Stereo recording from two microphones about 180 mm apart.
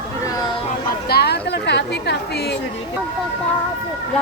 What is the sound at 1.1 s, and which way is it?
Chatter, 65° left (ahead or behind).